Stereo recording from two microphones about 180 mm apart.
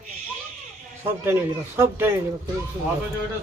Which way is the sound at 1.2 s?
15° right (ahead or behind).